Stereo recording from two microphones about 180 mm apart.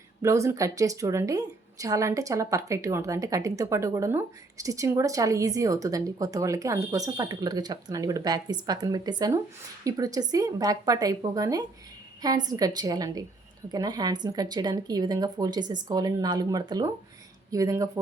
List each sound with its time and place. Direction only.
0.2 s a woman's voice: 15° right (ahead or behind)